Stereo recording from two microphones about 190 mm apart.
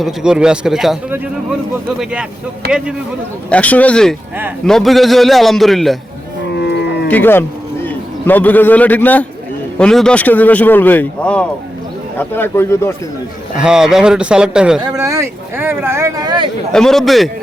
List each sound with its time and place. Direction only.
0.0 s a man's voice: 5° right (ahead or behind)
3.5 s a man's voice: 5° left (ahead or behind)
6.6 s livestock: 60° left (ahead or behind)
7.1 s a man's voice: 10° left (ahead or behind)
13.6 s a man's voice: 5° right (ahead or behind)
14.8 s speech: 20° right (ahead or behind)
16.7 s a man's voice: centre (ahead or behind)